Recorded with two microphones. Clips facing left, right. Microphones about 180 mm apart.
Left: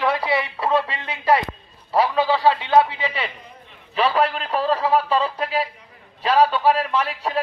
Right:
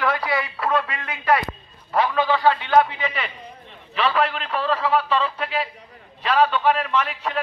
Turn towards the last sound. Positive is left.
turn(degrees=35)  # may be behind; listen again after turning